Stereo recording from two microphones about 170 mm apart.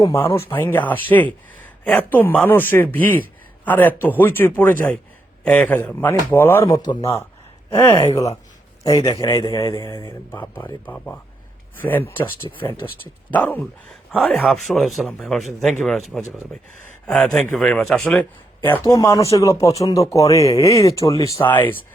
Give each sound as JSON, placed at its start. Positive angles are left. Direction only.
{"t": 0.0, "sound": "speech", "side_deg": 15}
{"t": 13.3, "sound": "a man's voice", "side_deg": 10}
{"t": 18.8, "sound": "speech", "side_deg": 20}